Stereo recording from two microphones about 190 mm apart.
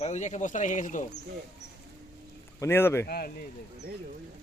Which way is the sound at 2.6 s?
10° left (ahead or behind).